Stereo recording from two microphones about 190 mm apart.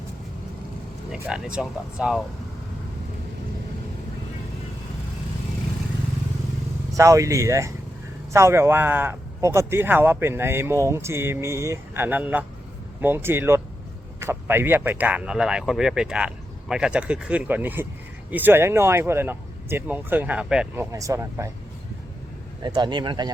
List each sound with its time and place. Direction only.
1.1 s speech: 5° right (ahead or behind)
6.9 s a man's voice: 15° right (ahead or behind)
20.9 s a man's voice: 15° right (ahead or behind)
22.6 s speech: 25° right (ahead or behind)